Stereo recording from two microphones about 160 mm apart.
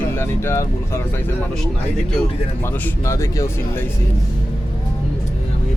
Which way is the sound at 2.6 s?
15° left (ahead or behind).